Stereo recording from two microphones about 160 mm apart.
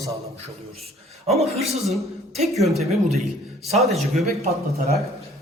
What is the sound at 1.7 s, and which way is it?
Speech, centre (ahead or behind).